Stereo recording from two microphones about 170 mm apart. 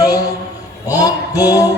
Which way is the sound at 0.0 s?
20° left (ahead or behind).